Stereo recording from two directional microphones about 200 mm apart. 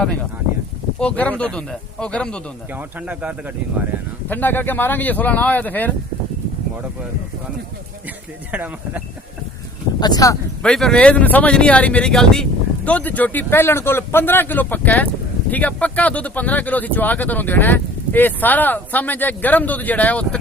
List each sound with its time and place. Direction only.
0.0 s speech: 5° left (ahead or behind)
3.1 s speech: 5° right (ahead or behind)
4.3 s speech: 10° left (ahead or behind)
8.5 s speech: 10° right (ahead or behind)
10.0 s speech: 20° left (ahead or behind)
10.6 s speech: 5° left (ahead or behind)